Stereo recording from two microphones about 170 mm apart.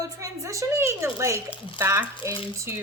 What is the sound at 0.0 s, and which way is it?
A woman's voice, 20° right (ahead or behind).